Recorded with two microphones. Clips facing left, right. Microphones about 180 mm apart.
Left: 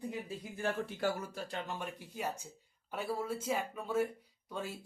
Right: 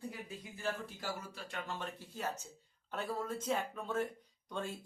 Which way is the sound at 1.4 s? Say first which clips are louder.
Left 4 dB; 35° left (ahead or behind).